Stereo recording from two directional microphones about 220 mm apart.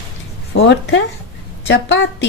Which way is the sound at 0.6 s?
50° left (ahead or behind).